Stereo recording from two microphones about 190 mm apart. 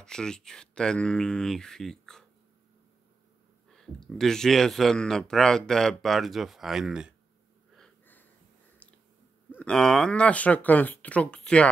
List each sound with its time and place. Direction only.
0.0 s speech: 5° left (ahead or behind)
3.7 s speech: 5° left (ahead or behind)
7.7 s wheeze: 5° left (ahead or behind)
8.8 s a sound: 5° left (ahead or behind)
9.6 s speech: 5° left (ahead or behind)